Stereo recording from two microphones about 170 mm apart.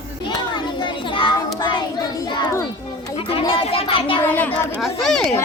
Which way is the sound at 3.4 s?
35° left (ahead or behind).